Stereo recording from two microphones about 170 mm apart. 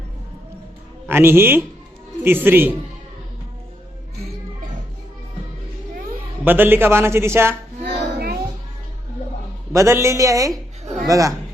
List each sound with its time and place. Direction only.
1.0 s a man's voice: 15° right (ahead or behind)
6.4 s a man's voice: 10° right (ahead or behind)
7.9 s a sound: 75° right (ahead or behind)
9.7 s a woman's voice: 15° right (ahead or behind)